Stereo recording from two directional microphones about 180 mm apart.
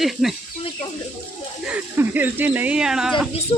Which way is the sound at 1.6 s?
10° right (ahead or behind).